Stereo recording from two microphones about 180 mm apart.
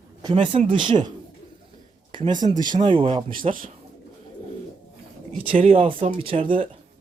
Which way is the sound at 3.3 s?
50° right (ahead or behind).